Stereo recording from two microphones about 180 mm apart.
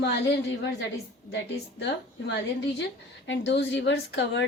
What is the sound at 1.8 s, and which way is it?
A woman's voice, 75° left (ahead or behind).